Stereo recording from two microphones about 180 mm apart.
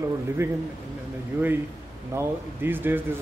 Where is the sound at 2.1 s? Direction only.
10° right (ahead or behind).